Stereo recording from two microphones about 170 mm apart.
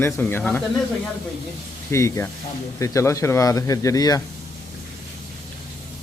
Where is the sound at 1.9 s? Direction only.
15° left (ahead or behind).